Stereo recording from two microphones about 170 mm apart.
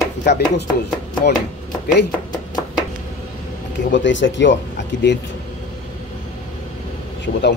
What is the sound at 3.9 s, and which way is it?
Speech, 90° left.